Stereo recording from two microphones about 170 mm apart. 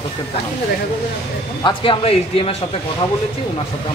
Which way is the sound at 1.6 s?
30° left (ahead or behind).